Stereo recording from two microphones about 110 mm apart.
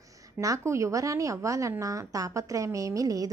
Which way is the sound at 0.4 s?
30° right (ahead or behind).